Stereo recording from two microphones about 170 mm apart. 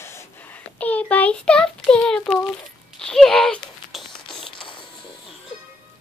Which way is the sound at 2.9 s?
5° left (ahead or behind).